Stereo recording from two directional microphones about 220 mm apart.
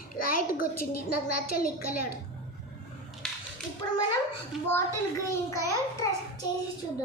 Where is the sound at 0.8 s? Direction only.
90° left.